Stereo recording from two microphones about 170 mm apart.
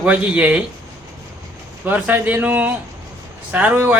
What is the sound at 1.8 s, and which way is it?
A man's voice, 10° right (ahead or behind).